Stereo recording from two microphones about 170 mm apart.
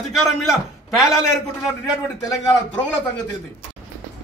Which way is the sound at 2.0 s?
20° left (ahead or behind).